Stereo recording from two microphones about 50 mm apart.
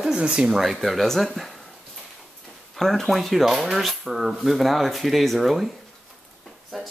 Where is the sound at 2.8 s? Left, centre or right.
Centre.